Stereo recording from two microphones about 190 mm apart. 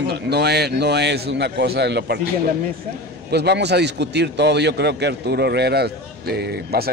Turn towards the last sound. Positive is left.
turn(degrees=-55)  # may be behind; listen again after turning